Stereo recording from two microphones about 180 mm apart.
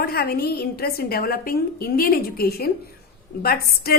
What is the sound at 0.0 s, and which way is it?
A woman's voice, 60° left (ahead or behind).